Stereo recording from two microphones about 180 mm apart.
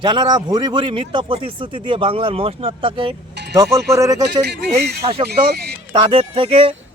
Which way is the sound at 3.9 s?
15° right (ahead or behind).